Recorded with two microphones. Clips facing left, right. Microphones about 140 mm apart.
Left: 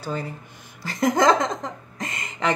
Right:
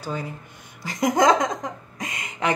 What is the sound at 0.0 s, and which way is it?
Speech, 10° right (ahead or behind).